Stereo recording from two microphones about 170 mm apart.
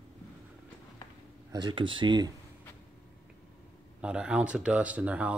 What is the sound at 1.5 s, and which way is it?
Speech, 25° right (ahead or behind).